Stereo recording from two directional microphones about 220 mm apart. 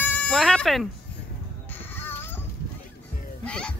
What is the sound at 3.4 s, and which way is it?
Music, 5° left (ahead or behind).